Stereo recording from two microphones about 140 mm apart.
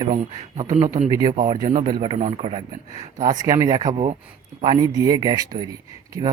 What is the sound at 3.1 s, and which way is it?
Speech, 30° right (ahead or behind).